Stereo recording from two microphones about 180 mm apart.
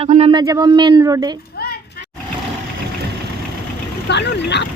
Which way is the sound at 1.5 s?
60° left (ahead or behind).